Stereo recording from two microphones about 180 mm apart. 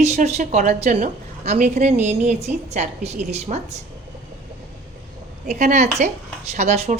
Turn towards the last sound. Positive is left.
turn(degrees=-35)  # may be behind; listen again after turning